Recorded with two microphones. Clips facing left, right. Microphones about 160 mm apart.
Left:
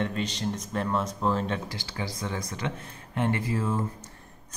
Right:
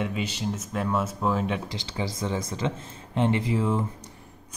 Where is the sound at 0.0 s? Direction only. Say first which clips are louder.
Even; 5° right (ahead or behind).